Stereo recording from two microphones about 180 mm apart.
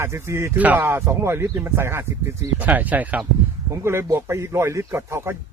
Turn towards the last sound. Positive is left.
turn(degrees=-15)  # may be behind; listen again after turning